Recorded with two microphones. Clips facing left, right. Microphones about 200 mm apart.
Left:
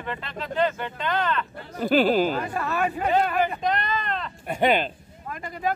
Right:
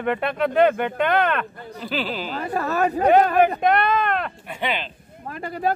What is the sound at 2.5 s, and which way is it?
Speech, 40° right (ahead or behind).